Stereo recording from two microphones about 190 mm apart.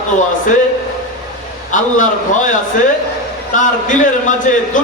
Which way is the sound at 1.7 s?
45° left (ahead or behind).